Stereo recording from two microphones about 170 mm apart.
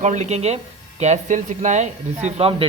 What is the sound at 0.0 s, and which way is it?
Speech, 45° right (ahead or behind).